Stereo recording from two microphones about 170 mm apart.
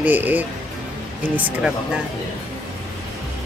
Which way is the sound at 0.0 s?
10° right (ahead or behind).